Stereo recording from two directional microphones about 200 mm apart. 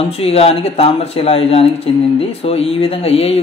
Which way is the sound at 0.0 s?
30° left (ahead or behind).